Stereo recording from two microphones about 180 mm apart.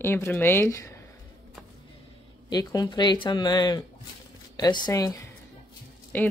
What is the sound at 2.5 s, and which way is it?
A woman's voice, 20° left (ahead or behind).